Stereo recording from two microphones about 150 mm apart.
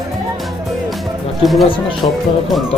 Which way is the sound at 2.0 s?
35° left (ahead or behind).